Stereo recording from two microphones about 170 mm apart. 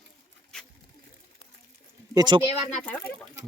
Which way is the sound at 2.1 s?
25° right (ahead or behind).